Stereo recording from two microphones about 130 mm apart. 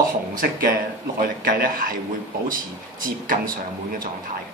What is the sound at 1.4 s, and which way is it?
Speech, 90° right.